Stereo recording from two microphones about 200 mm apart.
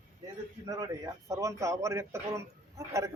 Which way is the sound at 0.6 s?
20° right (ahead or behind).